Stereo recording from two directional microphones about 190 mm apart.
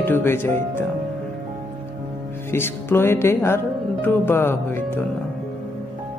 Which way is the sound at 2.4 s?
10° left (ahead or behind).